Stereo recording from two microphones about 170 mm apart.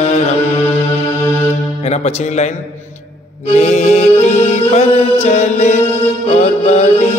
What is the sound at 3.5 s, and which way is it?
Mantra, 40° left (ahead or behind).